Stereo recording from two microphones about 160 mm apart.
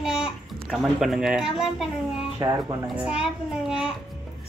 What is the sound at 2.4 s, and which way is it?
Speech, 25° right (ahead or behind).